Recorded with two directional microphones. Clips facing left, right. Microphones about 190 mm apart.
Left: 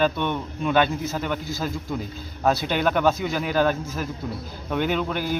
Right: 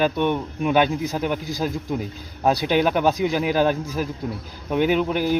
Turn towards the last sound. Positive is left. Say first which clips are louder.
# right 5 dB
turn(degrees=-10)  # may be behind; listen again after turning